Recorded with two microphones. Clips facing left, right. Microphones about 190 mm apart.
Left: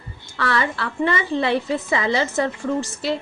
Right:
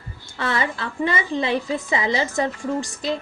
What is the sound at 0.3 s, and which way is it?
A woman's voice, 20° right (ahead or behind).